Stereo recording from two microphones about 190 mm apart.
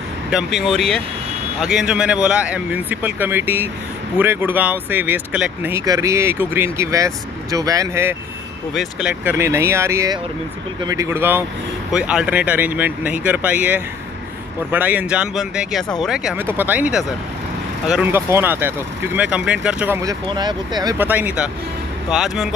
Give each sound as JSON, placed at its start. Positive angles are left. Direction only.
{"t": 0.3, "sound": "speech", "side_deg": -5}
{"t": 20.0, "sound": "speech", "side_deg": -20}
{"t": 21.0, "sound": "speech", "side_deg": -10}